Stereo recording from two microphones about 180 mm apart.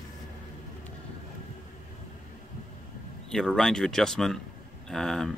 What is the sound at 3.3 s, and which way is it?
Speech, centre (ahead or behind).